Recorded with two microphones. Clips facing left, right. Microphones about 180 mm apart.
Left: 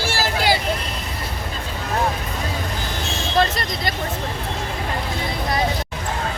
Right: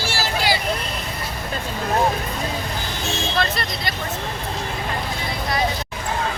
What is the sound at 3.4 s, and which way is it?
Speech, 40° left (ahead or behind).